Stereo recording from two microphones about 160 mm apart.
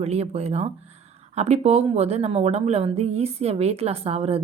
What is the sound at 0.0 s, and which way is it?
A woman's voice, 40° right (ahead or behind).